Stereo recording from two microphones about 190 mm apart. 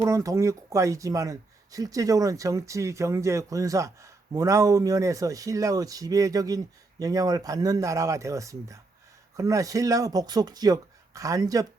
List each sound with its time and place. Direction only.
0.0 s speech: 15° right (ahead or behind)